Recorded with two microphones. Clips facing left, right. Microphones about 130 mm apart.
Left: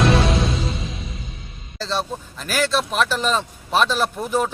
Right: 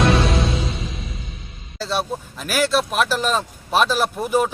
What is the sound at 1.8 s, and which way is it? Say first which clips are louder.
Speech: right 1 dB; 10° right (ahead or behind).